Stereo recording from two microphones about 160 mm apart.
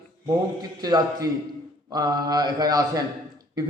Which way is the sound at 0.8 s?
25° right (ahead or behind).